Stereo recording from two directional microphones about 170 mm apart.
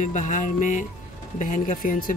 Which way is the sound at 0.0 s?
45° left (ahead or behind).